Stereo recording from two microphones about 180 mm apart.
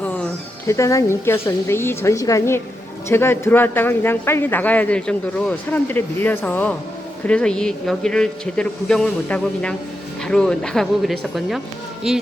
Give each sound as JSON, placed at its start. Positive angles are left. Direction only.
{"t": 0.0, "sound": "music", "side_deg": 10}
{"t": 0.7, "sound": "speech", "side_deg": 15}